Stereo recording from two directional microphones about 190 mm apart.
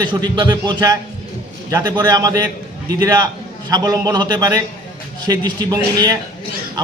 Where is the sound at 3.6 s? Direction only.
20° right (ahead or behind).